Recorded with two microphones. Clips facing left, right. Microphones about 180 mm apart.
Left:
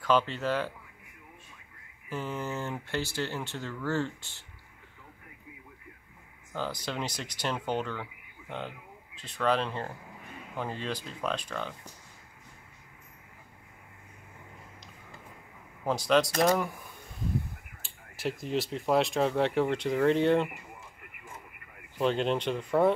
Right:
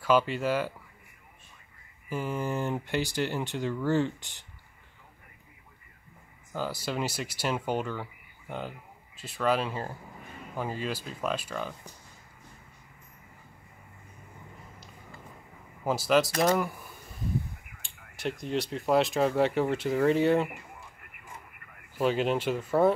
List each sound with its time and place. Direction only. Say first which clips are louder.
0.0 s speech: right 2 dB; 10° right (ahead or behind)
2.0 s speech: right 3 dB; 10° right (ahead or behind)
6.5 s speech: right 2 dB; 5° right (ahead or behind)
15.8 s speech: right 1 dB; 5° right (ahead or behind)
17.8 s speech: even; centre (ahead or behind)
21.9 s speech: right 1 dB; 5° right (ahead or behind)